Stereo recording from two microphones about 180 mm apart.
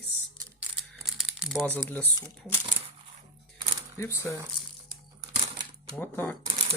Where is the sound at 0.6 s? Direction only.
Centre (ahead or behind).